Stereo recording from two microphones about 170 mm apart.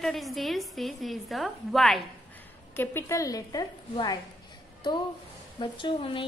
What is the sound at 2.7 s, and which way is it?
A woman's voice, 15° left (ahead or behind).